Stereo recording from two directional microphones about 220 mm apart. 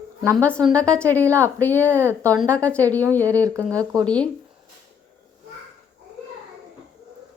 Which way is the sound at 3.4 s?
15° right (ahead or behind).